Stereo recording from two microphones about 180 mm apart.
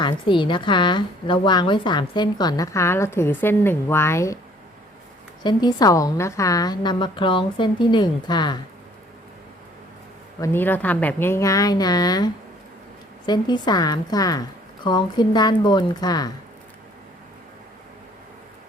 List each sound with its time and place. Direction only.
0.0 s a woman's voice: 25° left (ahead or behind)
5.4 s a woman's voice: 25° left (ahead or behind)
10.4 s a woman's voice: 10° left (ahead or behind)